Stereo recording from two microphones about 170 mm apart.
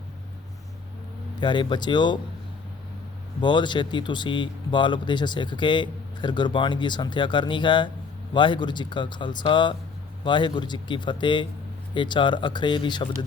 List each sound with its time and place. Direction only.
1.4 s speech: 25° left (ahead or behind)
3.4 s speech: 25° left (ahead or behind)